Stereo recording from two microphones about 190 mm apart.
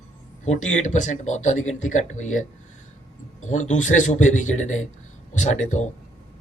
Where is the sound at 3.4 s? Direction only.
40° left (ahead or behind).